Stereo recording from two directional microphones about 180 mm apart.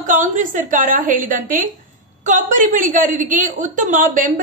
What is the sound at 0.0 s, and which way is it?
A woman's voice, 45° right (ahead or behind).